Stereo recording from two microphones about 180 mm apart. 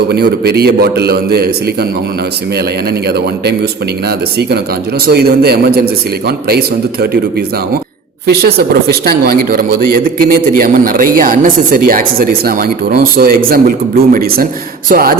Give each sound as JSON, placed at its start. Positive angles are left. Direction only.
{"t": 0.1, "sound": "a man's voice", "side_deg": -60}
{"t": 2.9, "sound": "a man's voice", "side_deg": -65}